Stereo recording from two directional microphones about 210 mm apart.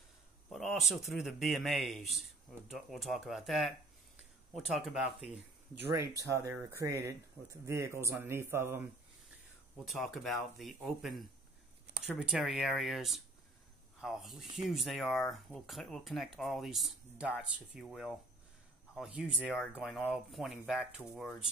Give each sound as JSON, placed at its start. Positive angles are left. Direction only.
{"t": 0.5, "sound": "speech", "side_deg": 0}
{"t": 5.9, "sound": "speech", "side_deg": -15}
{"t": 9.8, "sound": "speech", "side_deg": 0}